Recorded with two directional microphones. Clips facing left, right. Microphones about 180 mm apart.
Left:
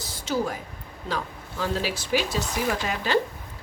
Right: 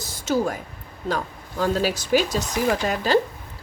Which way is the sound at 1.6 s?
40° right (ahead or behind).